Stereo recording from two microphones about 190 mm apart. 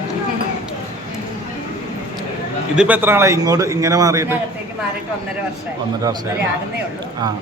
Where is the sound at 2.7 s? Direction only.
5° right (ahead or behind).